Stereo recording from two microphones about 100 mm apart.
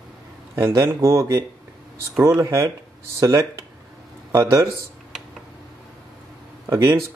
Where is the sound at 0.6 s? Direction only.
25° right (ahead or behind).